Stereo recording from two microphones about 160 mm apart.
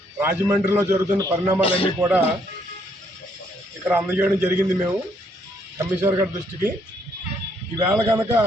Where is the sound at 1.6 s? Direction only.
35° left (ahead or behind).